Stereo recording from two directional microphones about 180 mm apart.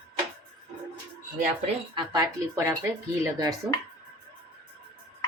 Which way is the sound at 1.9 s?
25° right (ahead or behind).